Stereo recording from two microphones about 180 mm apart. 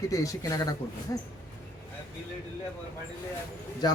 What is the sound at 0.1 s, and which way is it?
Speech, 20° left (ahead or behind).